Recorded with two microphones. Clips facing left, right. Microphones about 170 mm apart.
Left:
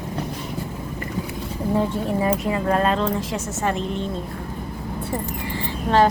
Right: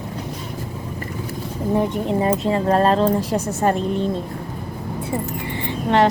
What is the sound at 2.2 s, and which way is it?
A woman's voice, 30° right (ahead or behind).